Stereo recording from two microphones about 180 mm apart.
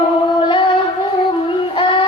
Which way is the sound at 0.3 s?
25° left (ahead or behind).